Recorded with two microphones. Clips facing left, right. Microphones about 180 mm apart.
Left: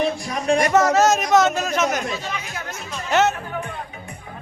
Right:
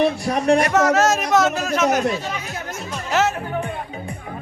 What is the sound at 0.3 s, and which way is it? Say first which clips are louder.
Speech: right 4 dB; 60° right (ahead or behind).